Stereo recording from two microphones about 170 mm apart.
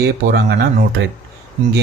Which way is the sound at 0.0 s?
70° right (ahead or behind).